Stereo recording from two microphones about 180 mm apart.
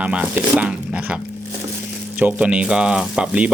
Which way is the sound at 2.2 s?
5° right (ahead or behind).